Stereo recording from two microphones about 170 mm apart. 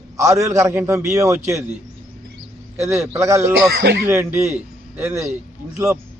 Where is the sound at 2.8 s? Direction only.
15° right (ahead or behind).